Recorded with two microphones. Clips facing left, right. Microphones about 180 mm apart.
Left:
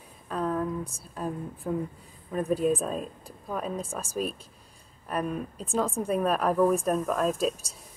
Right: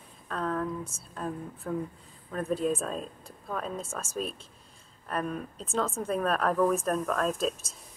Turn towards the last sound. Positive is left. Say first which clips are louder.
# left 2 dB
turn(degrees=5)  # may be behind; listen again after turning